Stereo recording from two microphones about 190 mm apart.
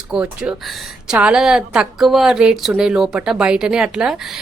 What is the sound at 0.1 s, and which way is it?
A woman's voice, 5° right (ahead or behind).